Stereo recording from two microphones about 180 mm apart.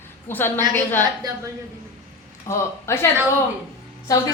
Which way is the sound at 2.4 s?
15° left (ahead or behind).